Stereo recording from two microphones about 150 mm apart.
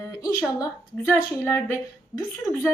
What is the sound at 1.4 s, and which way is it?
Speech, 15° left (ahead or behind).